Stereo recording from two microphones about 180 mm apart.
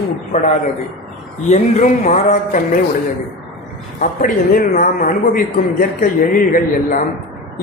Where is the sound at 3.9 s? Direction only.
50° left (ahead or behind).